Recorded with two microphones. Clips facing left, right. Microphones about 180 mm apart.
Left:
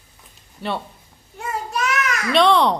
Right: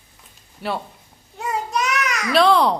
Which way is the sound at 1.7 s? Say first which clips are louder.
Left 1 dB; 20° right (ahead or behind).